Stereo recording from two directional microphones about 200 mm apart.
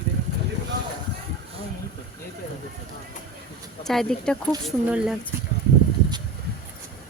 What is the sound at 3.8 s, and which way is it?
Speech, 5° left (ahead or behind).